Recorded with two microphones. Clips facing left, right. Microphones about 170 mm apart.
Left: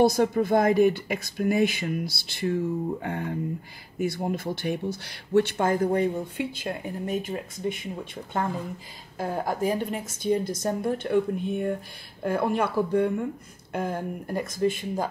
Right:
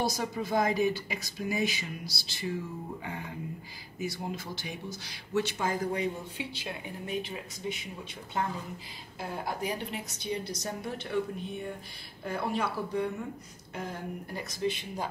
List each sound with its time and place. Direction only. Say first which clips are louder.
0.0 s speech: left 11 dB; 55° left (ahead or behind)